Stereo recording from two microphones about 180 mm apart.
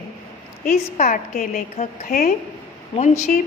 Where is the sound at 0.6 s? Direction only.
50° left (ahead or behind).